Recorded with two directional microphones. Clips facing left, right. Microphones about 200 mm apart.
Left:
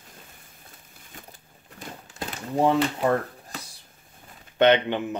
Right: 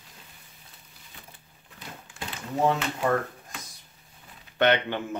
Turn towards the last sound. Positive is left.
turn(degrees=20)  # may be behind; listen again after turning